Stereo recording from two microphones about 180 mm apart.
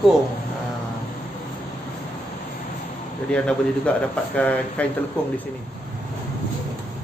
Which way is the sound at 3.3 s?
5° left (ahead or behind).